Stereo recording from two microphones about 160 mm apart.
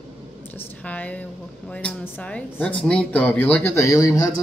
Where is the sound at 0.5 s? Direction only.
10° left (ahead or behind).